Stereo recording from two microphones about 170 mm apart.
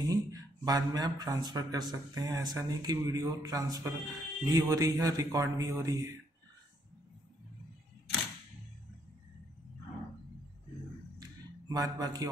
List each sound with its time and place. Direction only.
0.1 s speech: 20° right (ahead or behind)
11.7 s speech: 20° right (ahead or behind)